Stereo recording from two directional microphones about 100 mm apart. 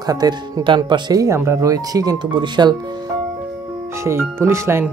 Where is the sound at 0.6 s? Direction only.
55° right (ahead or behind).